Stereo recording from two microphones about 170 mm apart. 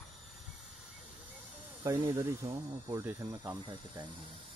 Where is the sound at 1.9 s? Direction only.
25° right (ahead or behind).